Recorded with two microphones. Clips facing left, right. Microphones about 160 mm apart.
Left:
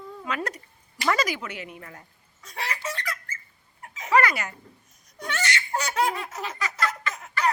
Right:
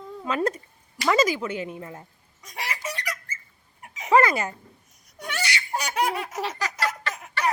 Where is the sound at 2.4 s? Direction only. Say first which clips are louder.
Left 1 dB; 15° right (ahead or behind).